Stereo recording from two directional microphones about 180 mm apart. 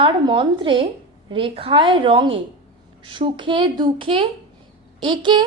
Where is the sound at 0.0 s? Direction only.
25° right (ahead or behind).